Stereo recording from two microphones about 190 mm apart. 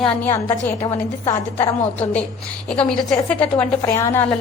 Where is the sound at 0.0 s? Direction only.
15° left (ahead or behind).